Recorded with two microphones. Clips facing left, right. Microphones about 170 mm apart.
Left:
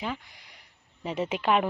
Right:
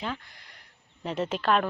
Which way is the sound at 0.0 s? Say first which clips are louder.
Left 1 dB; 10° left (ahead or behind).